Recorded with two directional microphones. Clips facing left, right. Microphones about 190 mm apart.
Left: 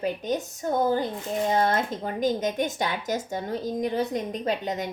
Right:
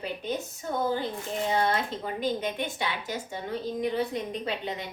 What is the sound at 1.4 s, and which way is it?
Speech, 45° left (ahead or behind).